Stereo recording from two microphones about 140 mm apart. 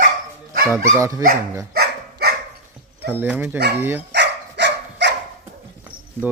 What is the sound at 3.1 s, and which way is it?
Speech, 10° right (ahead or behind).